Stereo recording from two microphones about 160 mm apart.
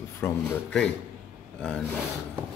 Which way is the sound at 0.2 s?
5° left (ahead or behind).